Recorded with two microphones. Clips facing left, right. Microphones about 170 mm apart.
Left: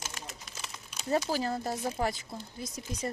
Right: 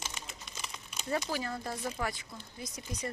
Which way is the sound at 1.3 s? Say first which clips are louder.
Left 5 dB; 35° left (ahead or behind).